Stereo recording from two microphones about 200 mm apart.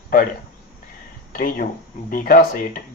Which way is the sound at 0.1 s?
45° left (ahead or behind).